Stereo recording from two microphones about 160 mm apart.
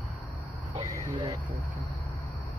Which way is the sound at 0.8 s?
20° right (ahead or behind).